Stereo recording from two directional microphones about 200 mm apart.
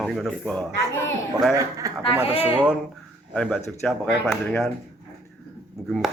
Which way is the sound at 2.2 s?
30° left (ahead or behind).